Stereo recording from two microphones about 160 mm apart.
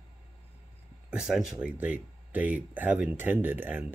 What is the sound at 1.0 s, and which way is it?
Speech, 5° right (ahead or behind).